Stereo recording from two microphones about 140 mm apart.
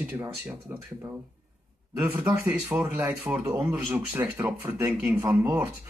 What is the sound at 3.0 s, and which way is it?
A man's voice, 15° right (ahead or behind).